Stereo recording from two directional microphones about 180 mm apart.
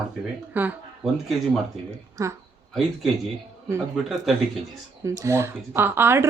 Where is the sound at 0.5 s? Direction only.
10° right (ahead or behind).